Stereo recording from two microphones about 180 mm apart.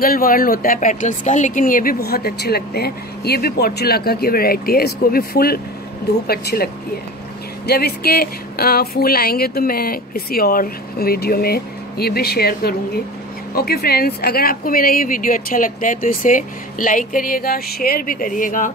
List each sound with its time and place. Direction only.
0.0 s a woman's voice: 55° left (ahead or behind)